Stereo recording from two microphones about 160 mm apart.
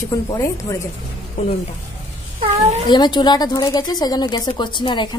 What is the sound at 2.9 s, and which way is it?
A woman's voice, 25° left (ahead or behind).